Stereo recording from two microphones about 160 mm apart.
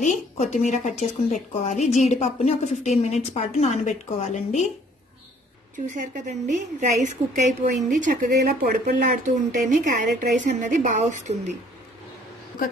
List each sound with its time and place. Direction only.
0.0 s a woman's voice: 50° left (ahead or behind)
5.9 s a woman's voice: 50° right (ahead or behind); by 9.1 s 65° right (ahead or behind)
9.2 s a woman's voice: 50° right (ahead or behind)